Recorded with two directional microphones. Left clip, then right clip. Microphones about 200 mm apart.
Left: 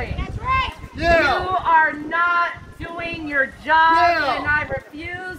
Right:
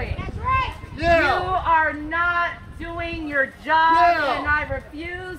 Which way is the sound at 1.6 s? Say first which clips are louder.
Left 4 dB; 55° left (ahead or behind).